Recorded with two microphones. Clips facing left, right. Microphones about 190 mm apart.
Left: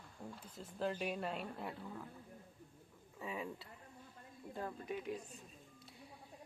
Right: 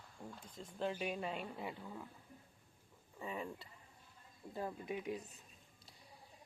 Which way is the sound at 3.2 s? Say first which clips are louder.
Even; 5° left (ahead or behind).